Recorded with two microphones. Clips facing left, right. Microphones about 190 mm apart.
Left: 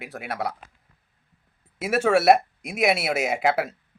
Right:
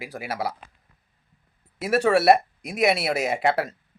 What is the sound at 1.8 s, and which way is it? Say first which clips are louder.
Speech: even; centre (ahead or behind).